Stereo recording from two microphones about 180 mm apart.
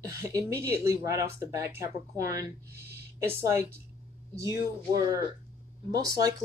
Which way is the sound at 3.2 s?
15° right (ahead or behind).